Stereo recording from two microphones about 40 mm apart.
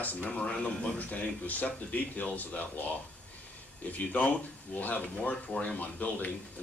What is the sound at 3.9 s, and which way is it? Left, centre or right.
Speech, left.